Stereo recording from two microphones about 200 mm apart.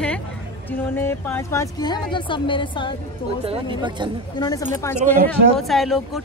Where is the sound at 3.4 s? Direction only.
25° right (ahead or behind).